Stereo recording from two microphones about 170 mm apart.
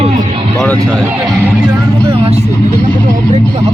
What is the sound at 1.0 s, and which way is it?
Speech, 10° right (ahead or behind).